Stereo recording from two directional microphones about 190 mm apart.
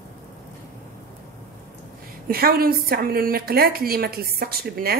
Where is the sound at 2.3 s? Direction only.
50° right (ahead or behind).